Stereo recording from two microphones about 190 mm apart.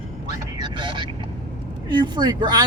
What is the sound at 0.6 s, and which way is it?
Speech, 25° right (ahead or behind).